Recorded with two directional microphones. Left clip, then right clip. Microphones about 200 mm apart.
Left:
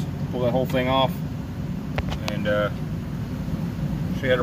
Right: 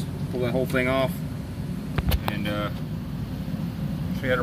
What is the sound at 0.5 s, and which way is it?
Speech, 25° left (ahead or behind).